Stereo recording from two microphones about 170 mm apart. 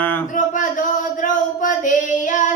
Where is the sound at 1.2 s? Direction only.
50° left (ahead or behind).